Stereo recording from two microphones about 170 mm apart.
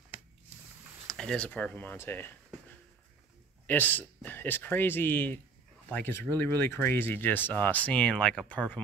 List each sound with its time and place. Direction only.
1.0 s speech: 5° left (ahead or behind)
3.6 s speech: 10° left (ahead or behind)